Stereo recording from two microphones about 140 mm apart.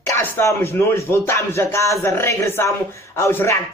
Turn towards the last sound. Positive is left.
turn(degrees=20)  # may be behind; listen again after turning